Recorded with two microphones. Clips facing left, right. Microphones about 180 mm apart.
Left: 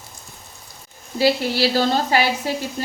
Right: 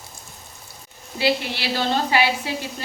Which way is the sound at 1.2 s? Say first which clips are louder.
Left 5 dB; 40° left (ahead or behind).